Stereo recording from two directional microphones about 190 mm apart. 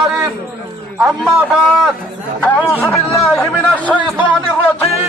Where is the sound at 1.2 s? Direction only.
Centre (ahead or behind).